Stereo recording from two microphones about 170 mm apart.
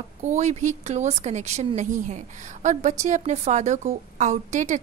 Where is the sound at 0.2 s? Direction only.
45° right (ahead or behind).